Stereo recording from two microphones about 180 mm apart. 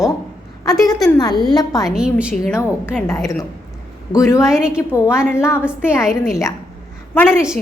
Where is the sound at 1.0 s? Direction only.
20° left (ahead or behind).